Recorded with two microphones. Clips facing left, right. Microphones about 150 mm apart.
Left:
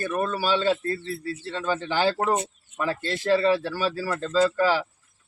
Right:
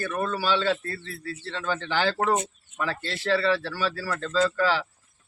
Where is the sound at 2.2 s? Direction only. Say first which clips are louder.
Even; 35° left (ahead or behind).